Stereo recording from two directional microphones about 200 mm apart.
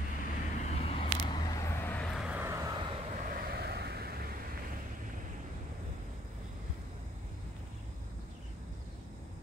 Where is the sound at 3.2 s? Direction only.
50° right (ahead or behind).